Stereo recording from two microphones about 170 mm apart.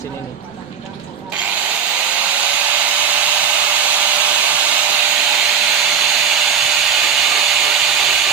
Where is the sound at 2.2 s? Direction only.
10° right (ahead or behind).